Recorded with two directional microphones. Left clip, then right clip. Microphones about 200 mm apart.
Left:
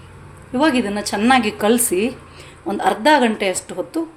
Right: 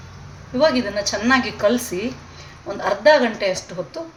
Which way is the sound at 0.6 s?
55° left (ahead or behind).